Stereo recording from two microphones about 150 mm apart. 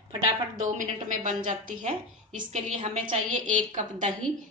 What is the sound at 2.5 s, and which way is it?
A woman's voice, 55° right (ahead or behind).